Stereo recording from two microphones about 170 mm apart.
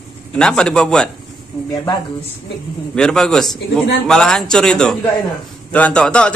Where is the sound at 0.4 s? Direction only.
5° left (ahead or behind).